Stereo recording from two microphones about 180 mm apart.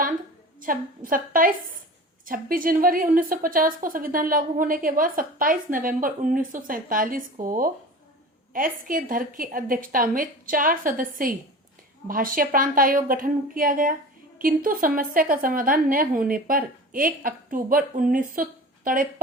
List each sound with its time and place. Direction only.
0.6 s a woman's voice: 50° right (ahead or behind)